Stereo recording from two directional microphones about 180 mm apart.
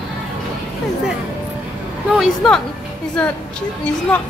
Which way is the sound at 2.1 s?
Centre (ahead or behind).